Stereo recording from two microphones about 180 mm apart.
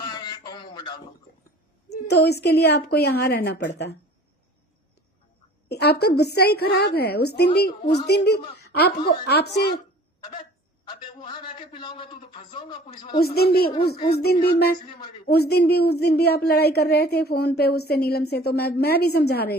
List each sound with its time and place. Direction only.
0.0 s a sound: 25° left (ahead or behind)
2.0 s a woman's voice: 65° left (ahead or behind)
5.6 s a woman's voice: 65° left (ahead or behind)
10.8 s a man's voice: 25° left (ahead or behind)
13.1 s a woman's voice: 60° left (ahead or behind)